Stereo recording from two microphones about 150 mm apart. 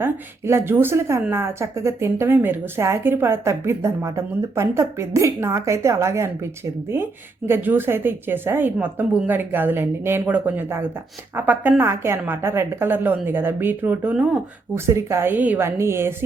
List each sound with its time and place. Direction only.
0.0 s speech: 15° right (ahead or behind)